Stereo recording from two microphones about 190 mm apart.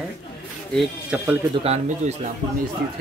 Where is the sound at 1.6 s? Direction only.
35° right (ahead or behind).